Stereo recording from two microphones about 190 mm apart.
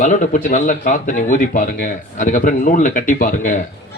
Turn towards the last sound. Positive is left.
turn(degrees=45)  # may be behind; listen again after turning